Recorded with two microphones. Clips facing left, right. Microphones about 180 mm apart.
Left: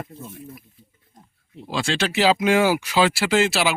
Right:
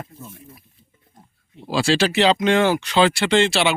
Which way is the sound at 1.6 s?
35° right (ahead or behind).